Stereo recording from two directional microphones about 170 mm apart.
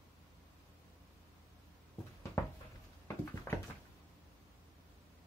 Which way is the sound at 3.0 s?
15° left (ahead or behind).